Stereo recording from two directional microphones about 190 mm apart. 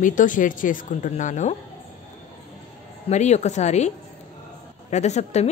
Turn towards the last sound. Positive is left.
turn(degrees=35)  # may be behind; listen again after turning